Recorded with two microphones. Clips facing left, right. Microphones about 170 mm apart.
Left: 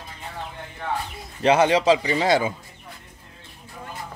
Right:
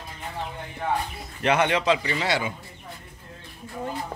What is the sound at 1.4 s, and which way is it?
Speech, 30° left (ahead or behind).